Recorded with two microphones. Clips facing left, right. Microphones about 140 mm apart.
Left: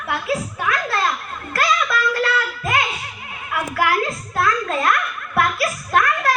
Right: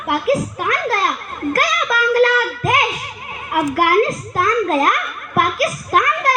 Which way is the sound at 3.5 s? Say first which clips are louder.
Right 5 dB; 45° right (ahead or behind).